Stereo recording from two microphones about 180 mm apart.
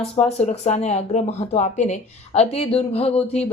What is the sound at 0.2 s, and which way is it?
A woman's voice, 35° left (ahead or behind).